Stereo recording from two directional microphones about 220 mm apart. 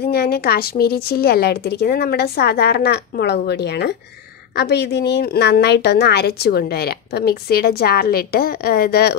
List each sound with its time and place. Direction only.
0.1 s a woman's voice: 45° left (ahead or behind)